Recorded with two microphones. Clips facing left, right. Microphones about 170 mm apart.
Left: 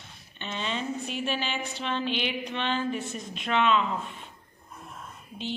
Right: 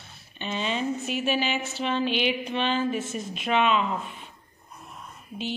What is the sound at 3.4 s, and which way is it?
Speech, 15° right (ahead or behind).